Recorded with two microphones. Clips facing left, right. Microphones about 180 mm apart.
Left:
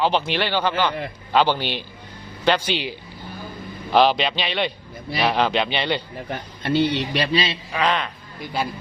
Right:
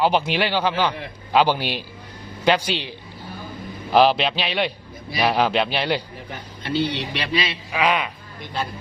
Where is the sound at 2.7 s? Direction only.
10° left (ahead or behind).